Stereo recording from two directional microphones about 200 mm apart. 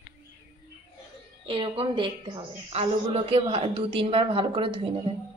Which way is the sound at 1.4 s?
25° right (ahead or behind).